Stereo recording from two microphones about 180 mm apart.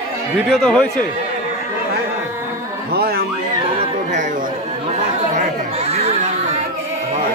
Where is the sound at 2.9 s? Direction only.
60° right (ahead or behind).